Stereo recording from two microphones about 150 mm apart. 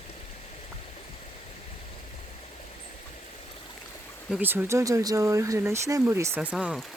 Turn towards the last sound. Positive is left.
turn(degrees=-5)  # may be behind; listen again after turning